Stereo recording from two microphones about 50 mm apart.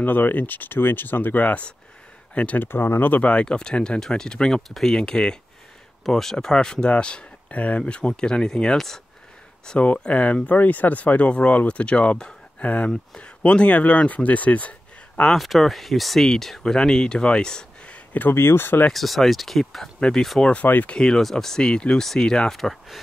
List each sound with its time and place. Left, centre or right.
0.0 s speech: left
2.6 s speech: left; by 4.6 s centre
4.6 s speech: centre
4.9 s speech: centre
9.8 s speech: left
15.3 s speech: centre
17.9 s a sound: left
18.3 s speech: left
18.9 s speech: centre
20.7 s speech: left
21.0 s speech: centre